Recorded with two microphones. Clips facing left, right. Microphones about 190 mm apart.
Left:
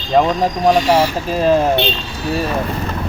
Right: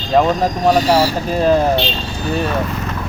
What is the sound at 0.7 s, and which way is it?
Speech, 40° right (ahead or behind).